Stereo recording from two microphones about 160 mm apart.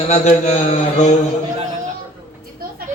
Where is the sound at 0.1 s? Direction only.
45° left (ahead or behind).